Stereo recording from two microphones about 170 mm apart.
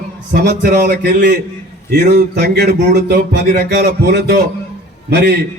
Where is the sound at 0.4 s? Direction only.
70° right (ahead or behind).